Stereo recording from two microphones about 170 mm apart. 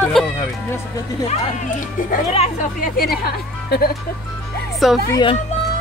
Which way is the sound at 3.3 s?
65° left (ahead or behind).